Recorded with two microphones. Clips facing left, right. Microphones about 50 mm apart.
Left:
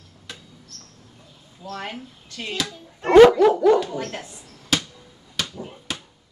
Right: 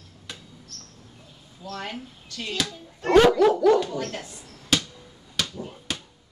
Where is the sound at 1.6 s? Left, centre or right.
Centre.